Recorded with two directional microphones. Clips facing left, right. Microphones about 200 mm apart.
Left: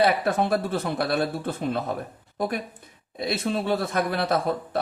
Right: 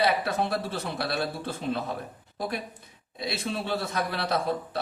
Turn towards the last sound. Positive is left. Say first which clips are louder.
# left 4 dB
turn(degrees=50)  # may be behind; listen again after turning